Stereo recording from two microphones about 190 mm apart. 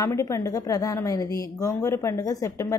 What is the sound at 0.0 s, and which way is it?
A woman's voice, 15° left (ahead or behind).